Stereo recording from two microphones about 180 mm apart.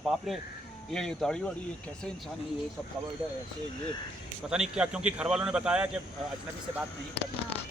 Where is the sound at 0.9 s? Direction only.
Centre (ahead or behind).